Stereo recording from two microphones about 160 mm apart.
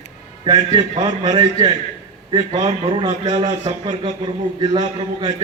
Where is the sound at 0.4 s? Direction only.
25° right (ahead or behind).